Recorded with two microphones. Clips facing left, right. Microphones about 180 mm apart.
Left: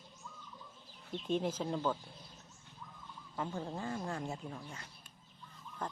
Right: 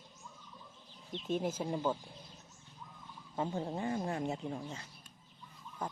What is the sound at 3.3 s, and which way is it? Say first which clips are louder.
Speech: right 3 dB; 20° right (ahead or behind).